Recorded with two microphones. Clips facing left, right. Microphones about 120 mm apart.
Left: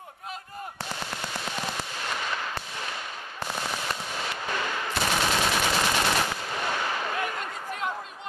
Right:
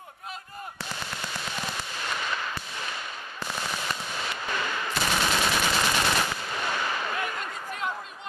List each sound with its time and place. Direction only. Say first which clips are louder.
1.3 s firecracker: left 2 dB; 50° left (ahead or behind)
3.6 s machine gun: left 1 dB; 55° left (ahead or behind)
5.1 s machine gun: even; 35° left (ahead or behind)
5.9 s machine gun: left 1 dB; 50° left (ahead or behind)